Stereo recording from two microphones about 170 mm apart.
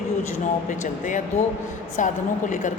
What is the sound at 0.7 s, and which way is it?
A woman's voice, 50° left (ahead or behind).